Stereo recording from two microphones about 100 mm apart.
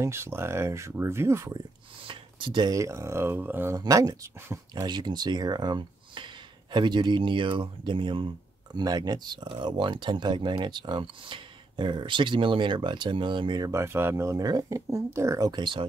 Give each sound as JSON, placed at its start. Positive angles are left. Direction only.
{"t": 0.0, "sound": "speech", "side_deg": -25}
{"t": 2.0, "sound": "speech", "side_deg": -55}
{"t": 2.7, "sound": "speech", "side_deg": -30}
{"t": 3.7, "sound": "speech", "side_deg": -35}
{"t": 4.8, "sound": "speech", "side_deg": -45}
{"t": 8.7, "sound": "speech", "side_deg": -40}
{"t": 13.6, "sound": "speech", "side_deg": -30}